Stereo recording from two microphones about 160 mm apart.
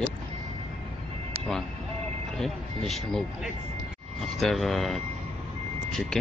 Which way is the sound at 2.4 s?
Centre (ahead or behind).